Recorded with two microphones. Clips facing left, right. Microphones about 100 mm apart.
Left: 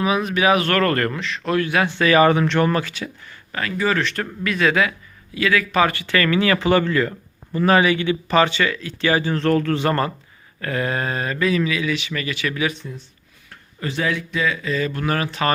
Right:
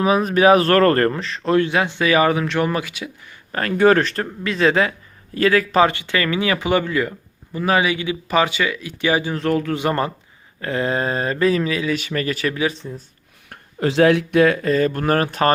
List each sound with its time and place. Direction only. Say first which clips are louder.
0.0 s speech: right 4 dB; 40° right (ahead or behind); by 3.3 s 15° right (ahead or behind)
3.5 s speech: right 7 dB; 50° right (ahead or behind)
4.1 s speech: even; 30° right (ahead or behind)
5.8 s speech: right 1 dB; 20° right (ahead or behind)
13.5 s speech: right 8 dB; 80° right; by 15.5 s 45° right (ahead or behind)